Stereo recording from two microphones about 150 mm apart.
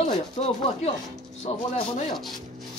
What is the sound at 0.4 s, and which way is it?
Speech, 40° left (ahead or behind).